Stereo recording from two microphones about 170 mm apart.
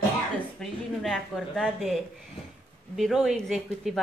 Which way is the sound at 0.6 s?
Centre (ahead or behind).